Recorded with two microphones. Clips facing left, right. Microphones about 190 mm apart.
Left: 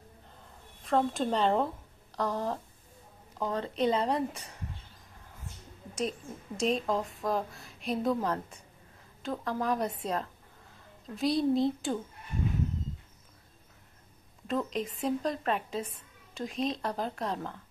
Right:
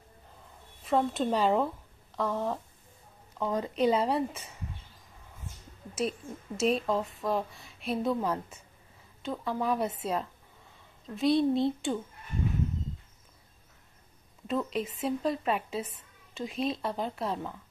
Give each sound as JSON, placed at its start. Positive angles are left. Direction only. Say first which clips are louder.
{"t": 0.8, "sound": "a woman's voice", "louder": "right 1 dB", "side_deg": 0}
{"t": 5.9, "sound": "a woman's voice", "louder": "right 2 dB", "side_deg": -5}
{"t": 14.7, "sound": "a woman's voice", "louder": "even", "side_deg": -5}